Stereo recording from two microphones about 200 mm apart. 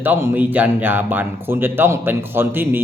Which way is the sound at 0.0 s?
10° right (ahead or behind).